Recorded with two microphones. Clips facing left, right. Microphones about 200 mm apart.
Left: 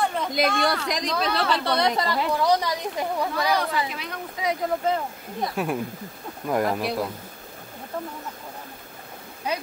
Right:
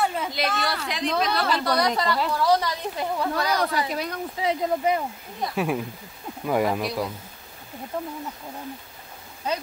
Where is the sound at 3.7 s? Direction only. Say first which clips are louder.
Right 2 dB; 40° right (ahead or behind).